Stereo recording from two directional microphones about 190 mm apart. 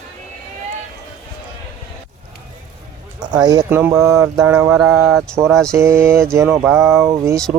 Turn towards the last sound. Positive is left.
turn(degrees=-15)  # may be behind; listen again after turning